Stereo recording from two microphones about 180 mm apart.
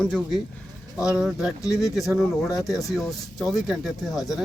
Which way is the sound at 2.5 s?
20° left (ahead or behind).